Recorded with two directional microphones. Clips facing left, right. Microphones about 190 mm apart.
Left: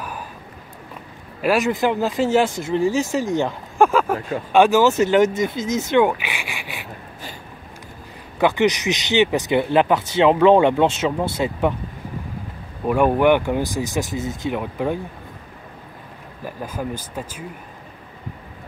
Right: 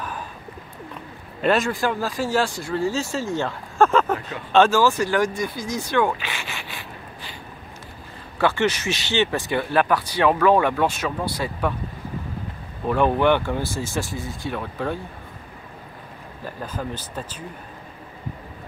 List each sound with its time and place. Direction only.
1.6 s speech: 20° left (ahead or behind)
8.4 s speech: 15° left (ahead or behind)
12.8 s speech: 10° left (ahead or behind)
16.4 s speech: 10° left (ahead or behind)